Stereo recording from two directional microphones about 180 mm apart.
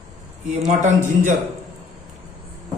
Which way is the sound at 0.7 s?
45° right (ahead or behind).